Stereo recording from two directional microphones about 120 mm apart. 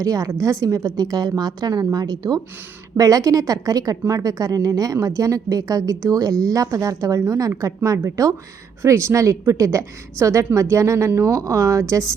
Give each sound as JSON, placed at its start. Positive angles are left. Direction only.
{"t": 0.0, "sound": "a woman's voice", "side_deg": -30}